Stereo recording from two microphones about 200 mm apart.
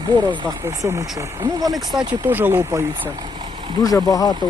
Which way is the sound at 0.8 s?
15° right (ahead or behind).